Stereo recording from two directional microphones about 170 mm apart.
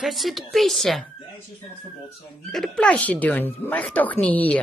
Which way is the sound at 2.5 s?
5° left (ahead or behind).